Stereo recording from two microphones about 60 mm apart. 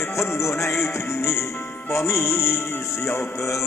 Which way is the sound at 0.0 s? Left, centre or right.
Left.